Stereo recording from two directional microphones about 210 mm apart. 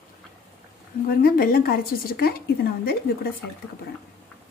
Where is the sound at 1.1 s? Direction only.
45° left (ahead or behind).